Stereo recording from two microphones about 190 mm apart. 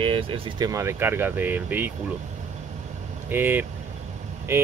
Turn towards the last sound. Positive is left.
turn(degrees=-15)  # may be behind; listen again after turning